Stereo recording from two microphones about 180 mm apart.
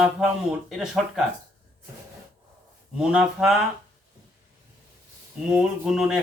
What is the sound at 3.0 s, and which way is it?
Speech, 5° right (ahead or behind).